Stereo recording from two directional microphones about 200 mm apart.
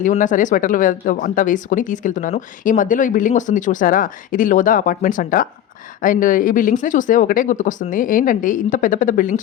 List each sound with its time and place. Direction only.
0.0 s speech: 40° left (ahead or behind)